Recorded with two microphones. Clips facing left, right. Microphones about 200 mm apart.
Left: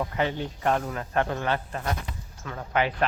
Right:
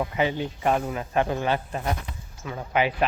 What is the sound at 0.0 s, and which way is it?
Speech, 10° right (ahead or behind).